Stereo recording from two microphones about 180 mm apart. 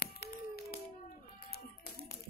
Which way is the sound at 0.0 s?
60° left (ahead or behind).